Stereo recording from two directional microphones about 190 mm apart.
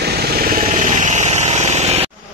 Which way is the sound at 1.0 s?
40° right (ahead or behind).